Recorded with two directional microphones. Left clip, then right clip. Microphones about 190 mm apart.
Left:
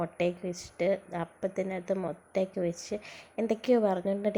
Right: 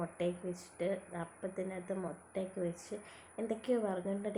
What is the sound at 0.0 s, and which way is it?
A woman's voice, 40° left (ahead or behind).